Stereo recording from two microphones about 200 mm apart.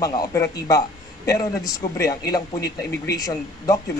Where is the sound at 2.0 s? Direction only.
15° left (ahead or behind).